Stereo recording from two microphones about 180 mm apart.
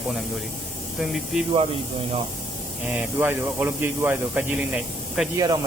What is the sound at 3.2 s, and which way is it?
Speech, 10° right (ahead or behind).